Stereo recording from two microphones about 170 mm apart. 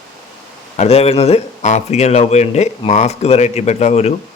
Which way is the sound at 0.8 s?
35° left (ahead or behind).